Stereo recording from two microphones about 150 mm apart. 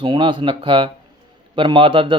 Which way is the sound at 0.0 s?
35° right (ahead or behind).